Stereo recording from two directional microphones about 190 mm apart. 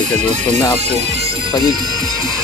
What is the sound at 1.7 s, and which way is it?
Speech, 20° right (ahead or behind).